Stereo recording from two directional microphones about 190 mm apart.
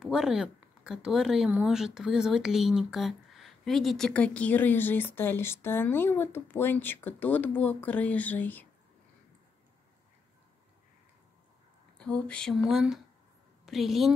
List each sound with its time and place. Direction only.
0.0 s speech: 5° right (ahead or behind)
12.0 s speech: 5° left (ahead or behind)